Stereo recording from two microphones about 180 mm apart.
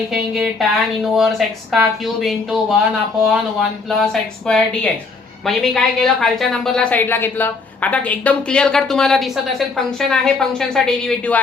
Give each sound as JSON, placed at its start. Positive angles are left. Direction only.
{"t": 0.1, "sound": "a woman's voice", "side_deg": -5}